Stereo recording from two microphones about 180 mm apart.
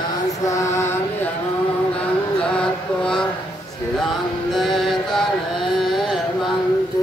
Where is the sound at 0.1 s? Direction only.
20° left (ahead or behind).